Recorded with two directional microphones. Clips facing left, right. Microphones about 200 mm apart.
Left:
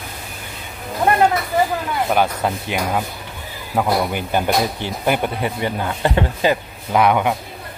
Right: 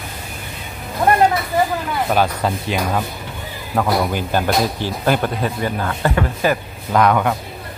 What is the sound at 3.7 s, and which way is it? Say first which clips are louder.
Speech: right 1 dB; 15° left (ahead or behind).